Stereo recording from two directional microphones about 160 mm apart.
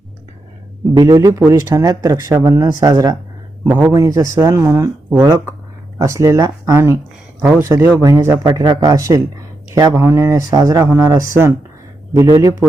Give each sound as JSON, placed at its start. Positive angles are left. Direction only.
{"t": 0.9, "sound": "a man's voice", "side_deg": -20}